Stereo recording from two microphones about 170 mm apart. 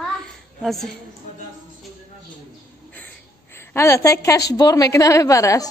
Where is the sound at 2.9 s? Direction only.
15° left (ahead or behind).